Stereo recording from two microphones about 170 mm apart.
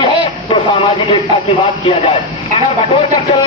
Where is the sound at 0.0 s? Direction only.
30° left (ahead or behind).